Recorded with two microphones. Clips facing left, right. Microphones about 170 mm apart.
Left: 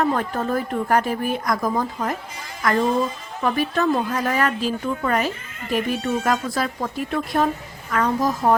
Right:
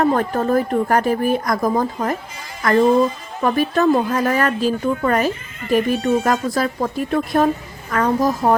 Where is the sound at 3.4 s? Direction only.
45° right (ahead or behind).